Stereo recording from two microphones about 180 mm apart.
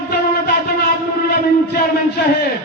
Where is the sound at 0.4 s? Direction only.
60° left (ahead or behind).